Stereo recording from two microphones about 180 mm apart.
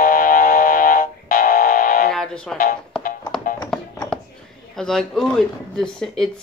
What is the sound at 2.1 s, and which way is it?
Music, 5° left (ahead or behind).